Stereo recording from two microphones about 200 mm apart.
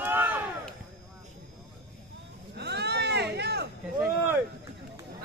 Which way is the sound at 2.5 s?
55° right (ahead or behind).